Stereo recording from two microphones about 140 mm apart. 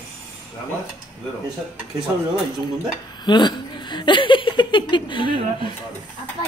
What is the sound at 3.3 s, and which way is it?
Speech, 30° left (ahead or behind).